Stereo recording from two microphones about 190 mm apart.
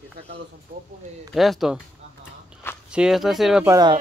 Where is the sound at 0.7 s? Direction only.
50° right (ahead or behind).